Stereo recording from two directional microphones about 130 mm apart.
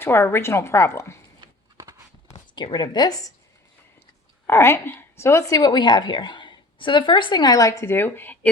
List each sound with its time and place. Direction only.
0.0 s a woman's voice: 15° left (ahead or behind)
2.6 s speech: 35° left (ahead or behind)
4.4 s a woman's voice: 20° left (ahead or behind)